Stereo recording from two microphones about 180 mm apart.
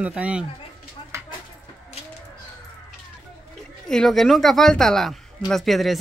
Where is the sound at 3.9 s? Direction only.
Centre (ahead or behind).